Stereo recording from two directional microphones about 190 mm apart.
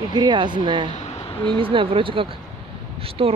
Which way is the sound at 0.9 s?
35° left (ahead or behind).